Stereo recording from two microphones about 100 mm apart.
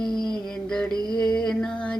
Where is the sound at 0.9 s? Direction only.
40° right (ahead or behind).